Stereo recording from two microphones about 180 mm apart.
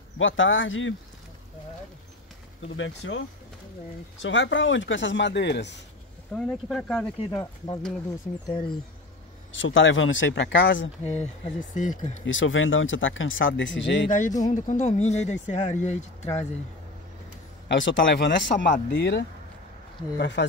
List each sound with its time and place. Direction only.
0.2 s speech: 90° left
2.8 s speech: 90° left; by 5.8 s 75° left (ahead or behind)
6.3 s speech: 5° left (ahead or behind)
7.2 s speech: 20° left (ahead or behind)
9.5 s speech: 90° left
11.7 s speech: 45° left (ahead or behind)
12.3 s speech: 90° left
14.1 s speech: 45° left (ahead or behind)
17.6 s speech: 90° left